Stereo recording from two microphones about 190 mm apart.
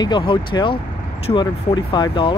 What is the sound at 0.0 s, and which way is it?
Speech, 25° left (ahead or behind).